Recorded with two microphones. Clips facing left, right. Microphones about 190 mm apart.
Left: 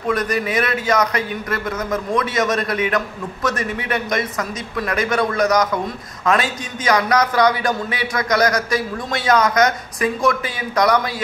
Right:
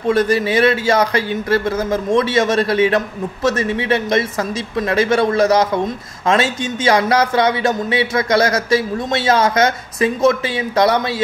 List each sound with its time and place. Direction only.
0.0 s speech: 25° right (ahead or behind)